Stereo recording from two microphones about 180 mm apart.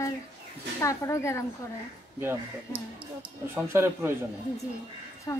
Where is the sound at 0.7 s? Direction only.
15° left (ahead or behind).